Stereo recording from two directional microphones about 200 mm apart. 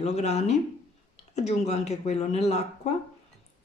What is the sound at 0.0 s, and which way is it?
Speech, 35° left (ahead or behind).